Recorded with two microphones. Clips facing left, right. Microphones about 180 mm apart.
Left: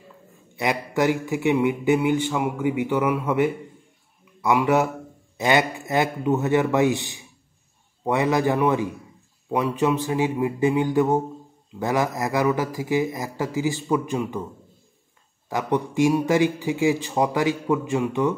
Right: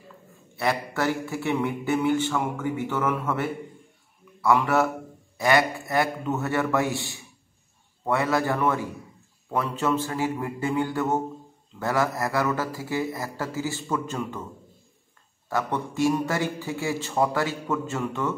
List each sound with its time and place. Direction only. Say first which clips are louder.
0.6 s a man's voice: left 3 dB; 15° left (ahead or behind)
15.5 s speech: left 4 dB; 15° left (ahead or behind)